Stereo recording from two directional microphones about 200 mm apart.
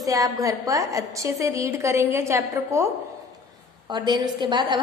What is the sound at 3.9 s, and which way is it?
Speech, 20° right (ahead or behind).